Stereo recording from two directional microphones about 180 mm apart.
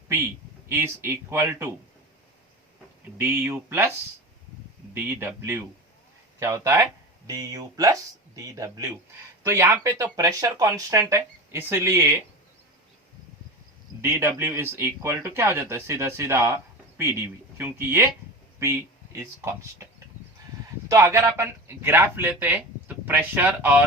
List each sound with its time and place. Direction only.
0.7 s speech: 15° right (ahead or behind)
3.2 s speech: 10° right (ahead or behind)
4.9 s speech: 10° right (ahead or behind)
14.0 s speech: 15° right (ahead or behind)
19.1 s speech: 15° right (ahead or behind)
20.8 s speech: 15° right (ahead or behind)